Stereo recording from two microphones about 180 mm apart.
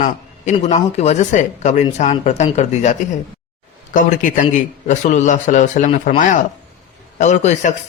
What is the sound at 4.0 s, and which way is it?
Speech, 45° left (ahead or behind).